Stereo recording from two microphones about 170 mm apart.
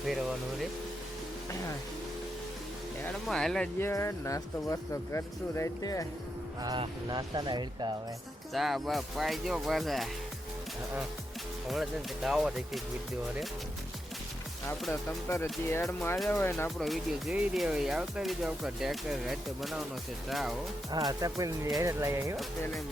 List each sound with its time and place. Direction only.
0.0 s speech: centre (ahead or behind)
3.0 s speech: 5° left (ahead or behind)
3.8 s speech: 15° left (ahead or behind)
6.6 s speech: 25° right (ahead or behind)
8.5 s speech: centre (ahead or behind)
11.7 s speech: centre (ahead or behind)
15.6 s speech: 15° left (ahead or behind)
16.6 s speech: centre (ahead or behind)
21.1 s speech: 20° right (ahead or behind)